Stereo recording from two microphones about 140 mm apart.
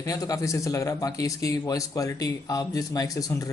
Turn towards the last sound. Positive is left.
turn(degrees=25)  # may be behind; listen again after turning